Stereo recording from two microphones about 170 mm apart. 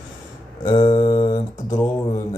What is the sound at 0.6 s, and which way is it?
Mantra, 25° left (ahead or behind).